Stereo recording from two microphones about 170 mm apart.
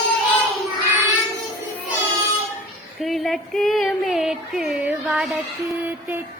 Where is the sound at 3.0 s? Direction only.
Centre (ahead or behind).